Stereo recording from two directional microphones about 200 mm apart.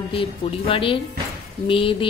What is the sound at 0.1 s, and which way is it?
A woman's voice, 25° left (ahead or behind).